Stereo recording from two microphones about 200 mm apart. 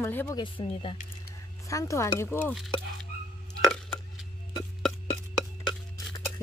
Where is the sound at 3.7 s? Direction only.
5° left (ahead or behind).